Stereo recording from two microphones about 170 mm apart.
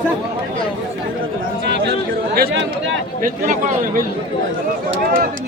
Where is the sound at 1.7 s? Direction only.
80° right.